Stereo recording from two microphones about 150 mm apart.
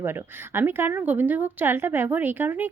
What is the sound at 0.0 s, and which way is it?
Speech, 15° right (ahead or behind).